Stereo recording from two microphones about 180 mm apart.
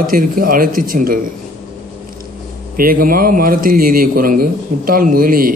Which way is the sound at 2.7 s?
50° right (ahead or behind).